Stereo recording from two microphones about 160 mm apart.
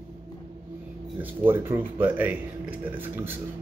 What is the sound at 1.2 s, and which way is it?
Speech, 15° right (ahead or behind).